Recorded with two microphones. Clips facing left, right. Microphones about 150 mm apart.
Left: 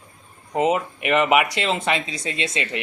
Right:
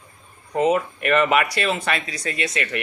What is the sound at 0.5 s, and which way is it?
Speech, 20° left (ahead or behind).